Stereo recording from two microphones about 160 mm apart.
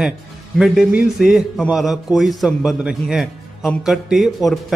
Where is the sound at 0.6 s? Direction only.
5° right (ahead or behind).